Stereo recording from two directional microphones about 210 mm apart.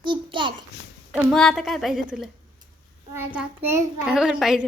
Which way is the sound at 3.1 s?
10° right (ahead or behind).